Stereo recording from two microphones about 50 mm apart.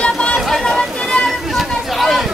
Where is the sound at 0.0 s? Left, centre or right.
Left.